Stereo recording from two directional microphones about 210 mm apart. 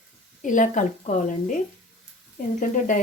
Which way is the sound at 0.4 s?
35° left (ahead or behind).